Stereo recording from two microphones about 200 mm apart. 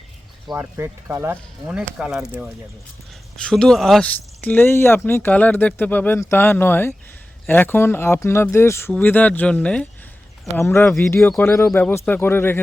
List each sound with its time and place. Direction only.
0.5 s speech: 10° right (ahead or behind)
3.3 s speech: 5° left (ahead or behind)